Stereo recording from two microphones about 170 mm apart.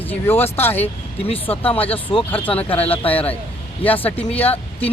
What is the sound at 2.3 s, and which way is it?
Speech, 10° left (ahead or behind).